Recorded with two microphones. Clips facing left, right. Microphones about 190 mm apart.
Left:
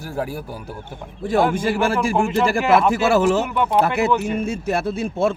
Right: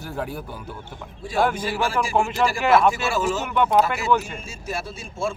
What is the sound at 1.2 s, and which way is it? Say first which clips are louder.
A man's voice: left 4 dB; 55° left (ahead or behind).